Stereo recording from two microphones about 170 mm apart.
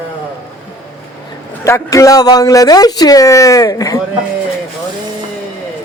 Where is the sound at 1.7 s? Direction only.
20° left (ahead or behind).